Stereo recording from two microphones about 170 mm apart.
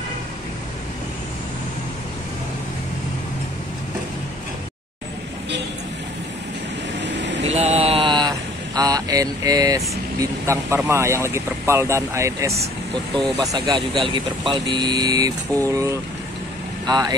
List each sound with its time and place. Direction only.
7.0 s vehicle: 90° right
7.4 s a sound: 40° right (ahead or behind); by 9.8 s 20° right (ahead or behind)
10.4 s speech: 15° right (ahead or behind)